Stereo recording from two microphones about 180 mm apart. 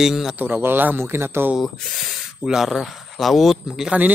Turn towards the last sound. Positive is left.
turn(degrees=-5)  # may be behind; listen again after turning